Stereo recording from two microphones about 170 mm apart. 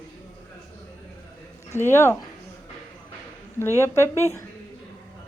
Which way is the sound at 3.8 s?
15° left (ahead or behind).